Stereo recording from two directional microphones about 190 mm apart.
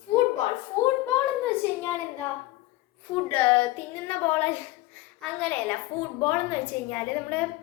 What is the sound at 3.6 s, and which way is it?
A woman's voice, 10° left (ahead or behind).